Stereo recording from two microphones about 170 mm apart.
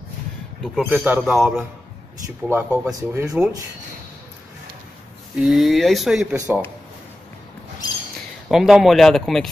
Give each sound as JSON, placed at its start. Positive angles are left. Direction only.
{"t": 0.8, "sound": "speech", "side_deg": -10}
{"t": 5.3, "sound": "speech", "side_deg": 0}
{"t": 6.3, "sound": "speech", "side_deg": -15}
{"t": 8.5, "sound": "speech", "side_deg": 0}